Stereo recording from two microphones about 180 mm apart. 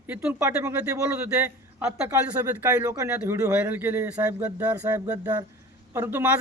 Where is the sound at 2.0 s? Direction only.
15° right (ahead or behind).